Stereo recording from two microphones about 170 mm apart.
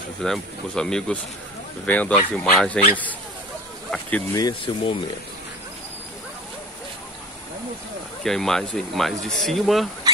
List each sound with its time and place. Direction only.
0.2 s speech: 5° left (ahead or behind)
4.3 s speech: 25° left (ahead or behind)
8.2 s speech: centre (ahead or behind)